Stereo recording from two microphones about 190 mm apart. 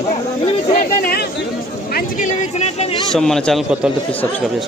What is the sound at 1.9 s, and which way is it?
Speech, 50° left (ahead or behind).